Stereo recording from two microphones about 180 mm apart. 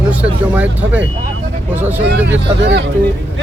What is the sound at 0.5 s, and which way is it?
Speech, 10° right (ahead or behind).